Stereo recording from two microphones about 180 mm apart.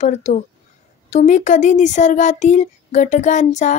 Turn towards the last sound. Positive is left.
turn(degrees=40)  # may be behind; listen again after turning